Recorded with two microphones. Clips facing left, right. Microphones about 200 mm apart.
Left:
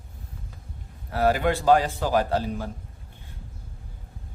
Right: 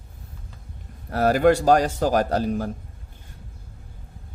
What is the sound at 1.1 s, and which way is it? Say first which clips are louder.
A man's voice: right 5 dB; 45° right (ahead or behind).